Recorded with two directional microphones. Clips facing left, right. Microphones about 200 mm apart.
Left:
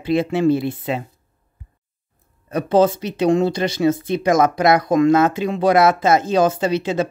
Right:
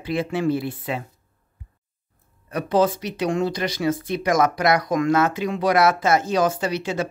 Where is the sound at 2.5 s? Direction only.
25° left (ahead or behind).